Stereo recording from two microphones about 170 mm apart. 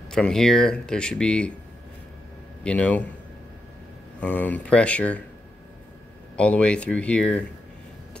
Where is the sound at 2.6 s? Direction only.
5° left (ahead or behind).